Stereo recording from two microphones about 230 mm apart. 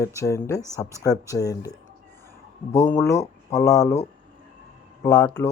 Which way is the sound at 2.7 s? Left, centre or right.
Centre.